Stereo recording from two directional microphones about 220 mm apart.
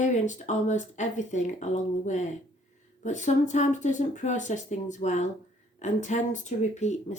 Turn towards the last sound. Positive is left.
turn(degrees=30)  # may be behind; listen again after turning